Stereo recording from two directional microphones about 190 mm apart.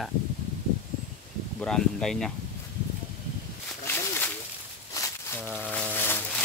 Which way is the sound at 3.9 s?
10° left (ahead or behind).